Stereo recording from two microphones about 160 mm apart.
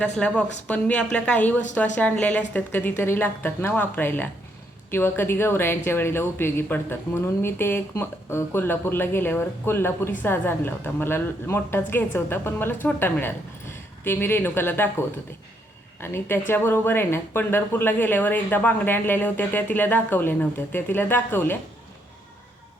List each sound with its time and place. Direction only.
0.0 s speech: 10° left (ahead or behind)